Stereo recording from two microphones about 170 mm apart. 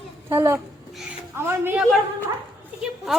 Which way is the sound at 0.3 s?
15° right (ahead or behind).